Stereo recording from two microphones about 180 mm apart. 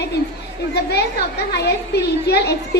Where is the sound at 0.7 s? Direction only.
65° left (ahead or behind).